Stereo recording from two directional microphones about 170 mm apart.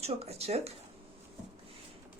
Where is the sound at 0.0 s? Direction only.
40° right (ahead or behind).